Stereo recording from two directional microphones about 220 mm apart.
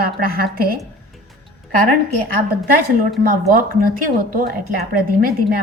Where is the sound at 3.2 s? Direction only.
40° right (ahead or behind).